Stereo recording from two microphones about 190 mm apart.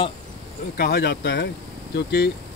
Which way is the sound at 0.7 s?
55° left (ahead or behind).